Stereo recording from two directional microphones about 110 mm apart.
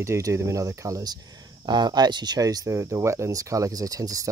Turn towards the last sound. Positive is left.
turn(degrees=-30)  # may be behind; listen again after turning